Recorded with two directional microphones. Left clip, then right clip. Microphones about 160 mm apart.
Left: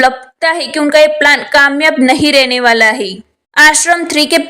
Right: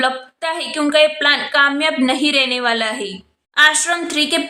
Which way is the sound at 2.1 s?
45° left (ahead or behind).